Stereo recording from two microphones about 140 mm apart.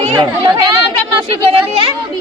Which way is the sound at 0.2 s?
30° right (ahead or behind).